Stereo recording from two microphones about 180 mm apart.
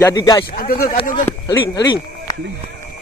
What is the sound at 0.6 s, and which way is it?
Speech, 55° left (ahead or behind).